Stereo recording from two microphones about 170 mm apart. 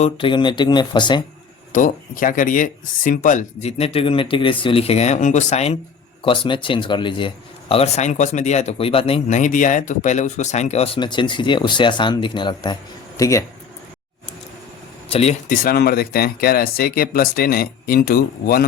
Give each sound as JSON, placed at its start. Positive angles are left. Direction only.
{"t": 0.0, "sound": "speech", "side_deg": 30}
{"t": 1.7, "sound": "speech", "side_deg": 50}
{"t": 6.2, "sound": "speech", "side_deg": 30}
{"t": 15.1, "sound": "speech", "side_deg": 40}